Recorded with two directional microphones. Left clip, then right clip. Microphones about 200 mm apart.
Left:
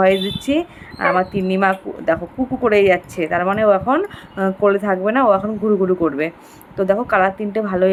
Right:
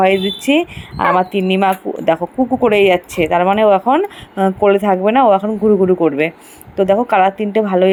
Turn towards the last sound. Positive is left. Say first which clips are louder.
# right 5 dB
turn(degrees=-20)  # may be behind; listen again after turning